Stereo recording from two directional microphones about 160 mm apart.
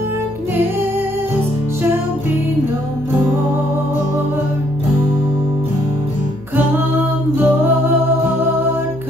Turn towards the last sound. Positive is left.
turn(degrees=-10)  # may be behind; listen again after turning